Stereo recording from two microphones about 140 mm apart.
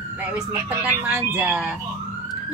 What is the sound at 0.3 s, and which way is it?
Speech, 10° right (ahead or behind).